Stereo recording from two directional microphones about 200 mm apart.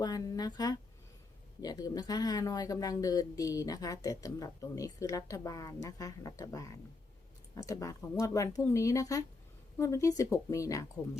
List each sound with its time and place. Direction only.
0.0 s speech: 20° left (ahead or behind)